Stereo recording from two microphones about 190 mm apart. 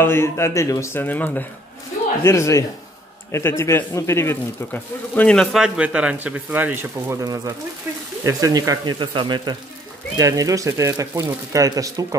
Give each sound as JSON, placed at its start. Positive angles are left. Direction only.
{"t": 0.0, "sound": "a man's voice", "side_deg": 15}